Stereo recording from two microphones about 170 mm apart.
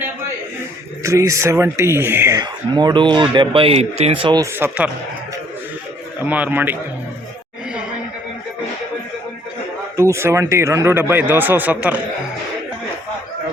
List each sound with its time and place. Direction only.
1.0 s speech: 15° right (ahead or behind)
4.5 s speech: 15° right (ahead or behind)
6.1 s speech: 10° right (ahead or behind)
10.0 s speech: 15° right (ahead or behind)